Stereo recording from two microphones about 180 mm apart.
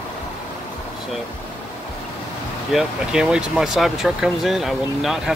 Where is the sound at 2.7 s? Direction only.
5° right (ahead or behind).